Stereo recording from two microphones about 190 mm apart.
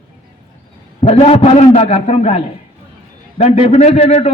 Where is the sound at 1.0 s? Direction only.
35° left (ahead or behind).